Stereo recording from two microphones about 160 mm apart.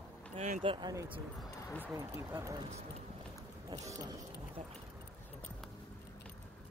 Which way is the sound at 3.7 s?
20° right (ahead or behind).